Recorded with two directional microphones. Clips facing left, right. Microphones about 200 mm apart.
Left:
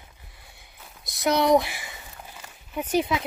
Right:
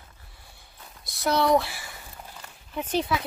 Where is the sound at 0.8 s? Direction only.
5° left (ahead or behind).